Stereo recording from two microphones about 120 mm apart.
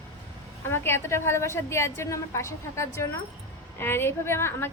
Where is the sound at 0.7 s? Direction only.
20° left (ahead or behind).